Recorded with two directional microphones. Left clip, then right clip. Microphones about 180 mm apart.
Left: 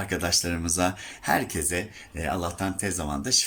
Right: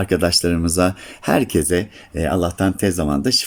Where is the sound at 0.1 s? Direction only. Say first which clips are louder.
Right 9 dB; 45° right (ahead or behind).